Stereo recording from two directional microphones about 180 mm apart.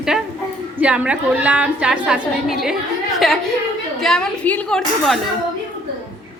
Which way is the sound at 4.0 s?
5° left (ahead or behind).